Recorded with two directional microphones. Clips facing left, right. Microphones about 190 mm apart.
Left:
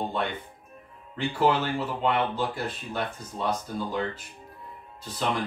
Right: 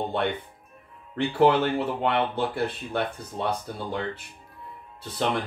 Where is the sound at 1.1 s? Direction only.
60° right (ahead or behind).